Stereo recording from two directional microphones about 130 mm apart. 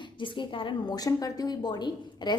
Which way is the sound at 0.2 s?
40° left (ahead or behind).